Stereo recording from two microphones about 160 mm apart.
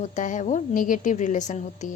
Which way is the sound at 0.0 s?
50° left (ahead or behind).